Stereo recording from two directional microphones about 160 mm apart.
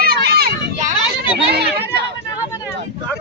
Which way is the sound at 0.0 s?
75° right (ahead or behind).